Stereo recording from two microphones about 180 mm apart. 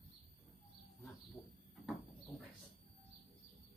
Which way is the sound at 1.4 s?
5° left (ahead or behind).